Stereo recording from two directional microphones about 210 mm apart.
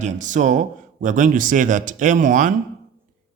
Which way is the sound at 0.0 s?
35° right (ahead or behind).